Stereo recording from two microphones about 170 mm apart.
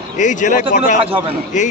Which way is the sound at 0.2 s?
45° left (ahead or behind).